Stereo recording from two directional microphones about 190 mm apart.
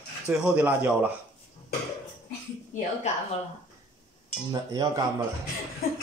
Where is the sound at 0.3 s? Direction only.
5° right (ahead or behind).